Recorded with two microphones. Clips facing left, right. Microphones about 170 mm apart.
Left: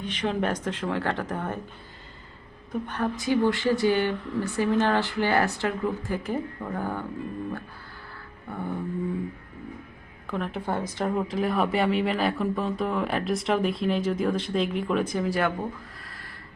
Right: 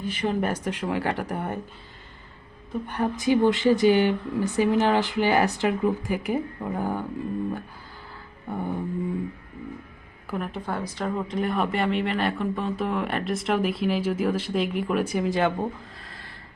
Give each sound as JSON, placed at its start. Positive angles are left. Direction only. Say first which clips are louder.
{"t": 0.0, "sound": "speech", "louder": "right 1 dB", "side_deg": -5}
{"t": 2.8, "sound": "speech", "louder": "right 4 dB", "side_deg": -15}
{"t": 8.4, "sound": "speech", "louder": "right 3 dB", "side_deg": -15}
{"t": 10.2, "sound": "speech", "louder": "even", "side_deg": -5}
{"t": 10.7, "sound": "speech", "louder": "left 2 dB", "side_deg": 15}
{"t": 11.3, "sound": "speech", "louder": "left 1 dB", "side_deg": 0}
{"t": 16.0, "sound": "a sound", "louder": "right 1 dB", "side_deg": -25}